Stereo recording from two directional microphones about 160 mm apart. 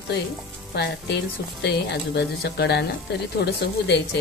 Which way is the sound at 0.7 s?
90° left.